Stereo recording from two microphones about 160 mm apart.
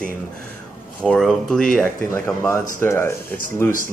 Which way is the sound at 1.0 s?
5° left (ahead or behind).